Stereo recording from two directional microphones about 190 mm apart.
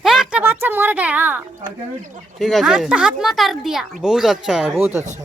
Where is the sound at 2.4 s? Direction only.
Centre (ahead or behind).